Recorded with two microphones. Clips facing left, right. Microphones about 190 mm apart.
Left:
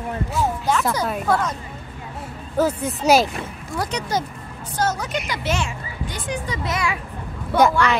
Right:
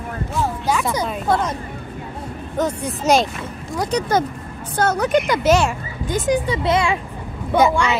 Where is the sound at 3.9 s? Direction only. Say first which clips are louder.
Right 10 dB; 50° right (ahead or behind).